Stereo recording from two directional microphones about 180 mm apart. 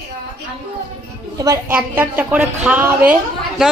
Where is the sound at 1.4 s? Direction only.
20° right (ahead or behind).